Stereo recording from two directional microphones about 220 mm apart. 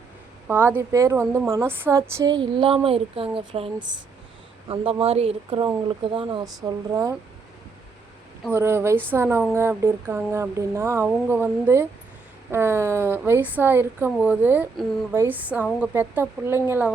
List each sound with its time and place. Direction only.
0.4 s a woman's voice: 10° right (ahead or behind)
8.4 s a woman's voice: 10° right (ahead or behind)